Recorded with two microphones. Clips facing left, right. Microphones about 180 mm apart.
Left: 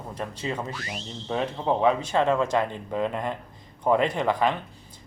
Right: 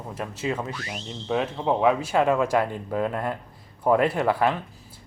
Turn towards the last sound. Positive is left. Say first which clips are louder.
# right 1 dB
turn(degrees=-5)  # may be behind; listen again after turning